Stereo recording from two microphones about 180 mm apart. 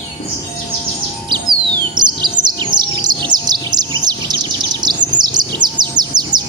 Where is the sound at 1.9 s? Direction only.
25° right (ahead or behind).